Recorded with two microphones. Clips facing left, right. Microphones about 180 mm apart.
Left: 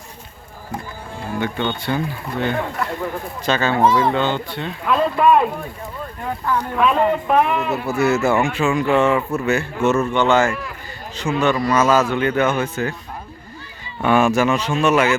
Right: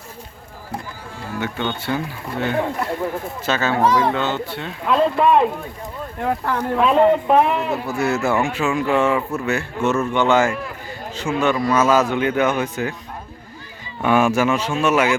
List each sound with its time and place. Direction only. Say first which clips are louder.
1.4 s speech: left 2 dB; 5° right (ahead or behind)
4.9 s speech: even; 25° right (ahead or behind)
6.1 s speech: right 1 dB; 70° right (ahead or behind)
6.7 s speech: right 4 dB; 30° right (ahead or behind)
7.9 s speech: left 4 dB; 5° left (ahead or behind)
10.1 s speech: even; 10° right (ahead or behind)
14.0 s speech: left 1 dB; 10° right (ahead or behind)